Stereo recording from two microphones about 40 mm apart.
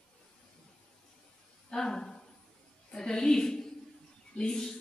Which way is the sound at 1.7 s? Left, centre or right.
Centre.